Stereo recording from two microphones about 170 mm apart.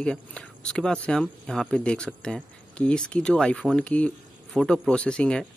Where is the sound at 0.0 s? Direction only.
5° left (ahead or behind).